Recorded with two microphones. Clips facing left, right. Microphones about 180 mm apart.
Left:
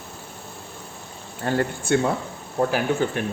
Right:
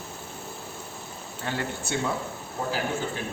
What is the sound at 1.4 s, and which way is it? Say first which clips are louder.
Speech: left 9 dB; 50° left (ahead or behind).